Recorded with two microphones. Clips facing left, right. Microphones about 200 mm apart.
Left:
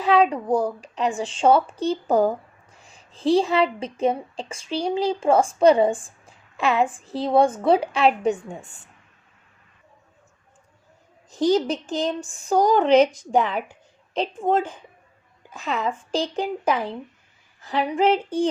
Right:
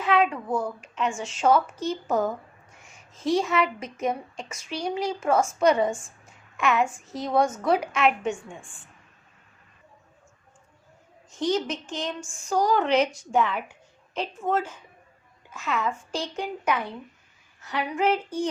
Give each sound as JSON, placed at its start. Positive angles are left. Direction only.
{"t": 0.0, "sound": "speech", "side_deg": 35}
{"t": 11.3, "sound": "a woman's voice", "side_deg": 35}